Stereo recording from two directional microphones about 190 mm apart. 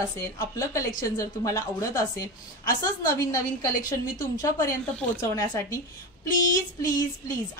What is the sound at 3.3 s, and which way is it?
A woman's voice, 20° left (ahead or behind).